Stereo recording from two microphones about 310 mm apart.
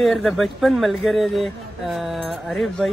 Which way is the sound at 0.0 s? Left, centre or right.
Centre.